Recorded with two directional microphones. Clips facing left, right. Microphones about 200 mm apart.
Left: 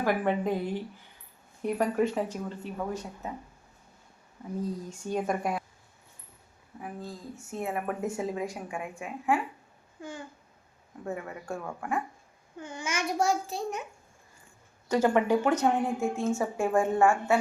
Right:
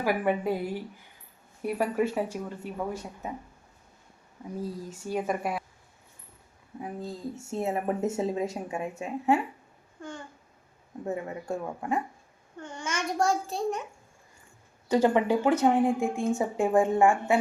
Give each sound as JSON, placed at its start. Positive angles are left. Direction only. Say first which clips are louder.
{"t": 0.0, "sound": "a woman's voice", "louder": "even", "side_deg": -10}
{"t": 4.6, "sound": "a child's voice", "louder": "left 1 dB", "side_deg": -5}
{"t": 7.5, "sound": "speech", "louder": "right 3 dB", "side_deg": -25}
{"t": 10.0, "sound": "a child's voice", "louder": "even", "side_deg": 5}
{"t": 11.0, "sound": "speech", "louder": "right 3 dB", "side_deg": -20}
{"t": 12.5, "sound": "a child's voice", "louder": "even", "side_deg": 5}
{"t": 14.8, "sound": "a woman's voice", "louder": "right 1 dB", "side_deg": -15}